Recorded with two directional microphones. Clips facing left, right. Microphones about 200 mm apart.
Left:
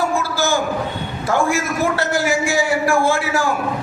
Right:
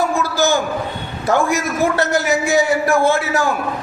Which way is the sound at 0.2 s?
20° right (ahead or behind).